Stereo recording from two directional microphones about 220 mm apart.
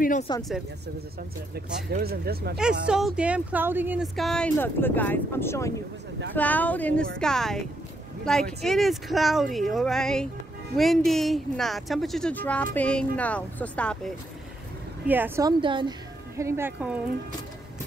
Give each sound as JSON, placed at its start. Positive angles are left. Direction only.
{"t": 0.3, "sound": "speech", "side_deg": 20}
{"t": 1.5, "sound": "speech", "side_deg": -45}
{"t": 2.5, "sound": "speech", "side_deg": -5}
{"t": 15.0, "sound": "a woman's voice", "side_deg": -10}